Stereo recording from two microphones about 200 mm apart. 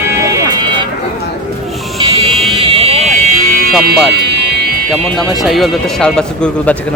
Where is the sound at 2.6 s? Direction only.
30° right (ahead or behind).